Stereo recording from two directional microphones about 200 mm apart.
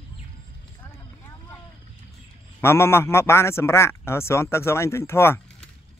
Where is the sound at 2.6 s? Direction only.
15° left (ahead or behind).